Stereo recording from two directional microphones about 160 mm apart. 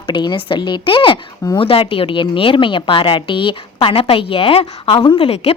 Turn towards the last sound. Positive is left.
turn(degrees=40)  # may be behind; listen again after turning